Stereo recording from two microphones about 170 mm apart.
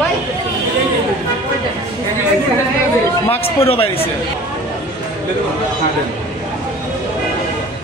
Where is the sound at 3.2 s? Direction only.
35° left (ahead or behind).